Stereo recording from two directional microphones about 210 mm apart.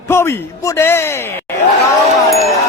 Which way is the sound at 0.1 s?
10° left (ahead or behind).